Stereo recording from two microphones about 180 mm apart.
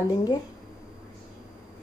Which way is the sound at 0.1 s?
25° left (ahead or behind).